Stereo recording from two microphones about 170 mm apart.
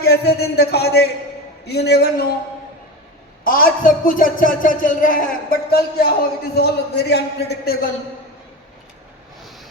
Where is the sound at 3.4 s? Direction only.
60° left (ahead or behind).